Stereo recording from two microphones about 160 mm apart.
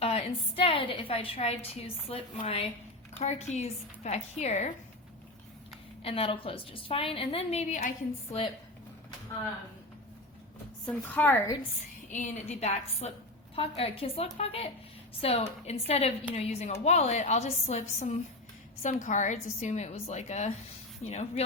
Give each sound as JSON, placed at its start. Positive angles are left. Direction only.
{"t": 0.0, "sound": "a woman's voice", "side_deg": 40}
{"t": 6.0, "sound": "a woman's voice", "side_deg": 35}
{"t": 10.8, "sound": "a woman's voice", "side_deg": 10}
{"t": 12.1, "sound": "a woman's voice", "side_deg": 45}